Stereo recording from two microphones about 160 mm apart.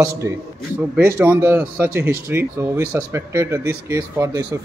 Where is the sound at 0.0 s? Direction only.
15° right (ahead or behind).